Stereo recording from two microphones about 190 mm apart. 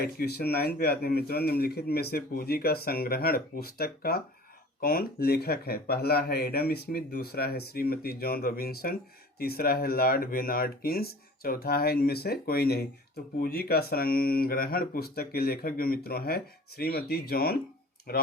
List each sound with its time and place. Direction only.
0.0 s speech: 55° left (ahead or behind)